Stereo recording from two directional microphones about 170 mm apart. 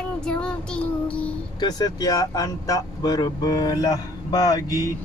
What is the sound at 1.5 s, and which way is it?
Speech, 25° left (ahead or behind).